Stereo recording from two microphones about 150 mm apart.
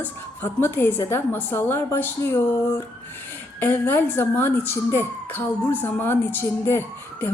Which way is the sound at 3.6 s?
15° left (ahead or behind).